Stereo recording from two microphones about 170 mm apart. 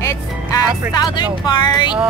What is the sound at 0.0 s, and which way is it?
Speech, 20° left (ahead or behind).